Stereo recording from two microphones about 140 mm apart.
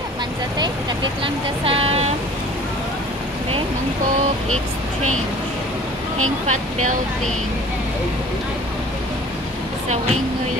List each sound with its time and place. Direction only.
1.2 s speech: 40° right (ahead or behind)